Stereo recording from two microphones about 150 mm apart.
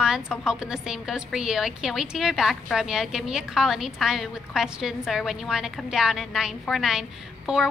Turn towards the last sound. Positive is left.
turn(degrees=-5)  # may be behind; listen again after turning